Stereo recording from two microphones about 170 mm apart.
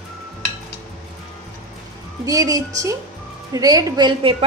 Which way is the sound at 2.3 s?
20° right (ahead or behind).